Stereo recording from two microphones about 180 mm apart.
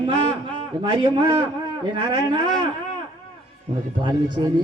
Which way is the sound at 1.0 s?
25° right (ahead or behind).